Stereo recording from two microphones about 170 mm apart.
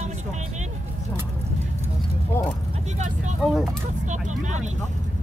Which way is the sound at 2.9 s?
45° right (ahead or behind).